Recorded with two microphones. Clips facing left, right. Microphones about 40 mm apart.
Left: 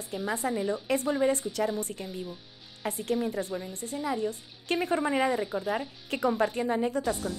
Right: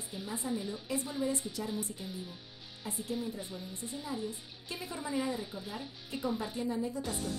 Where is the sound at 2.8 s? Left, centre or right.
Left.